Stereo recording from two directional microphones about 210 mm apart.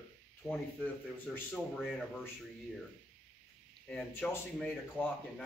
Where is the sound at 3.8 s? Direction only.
5° left (ahead or behind).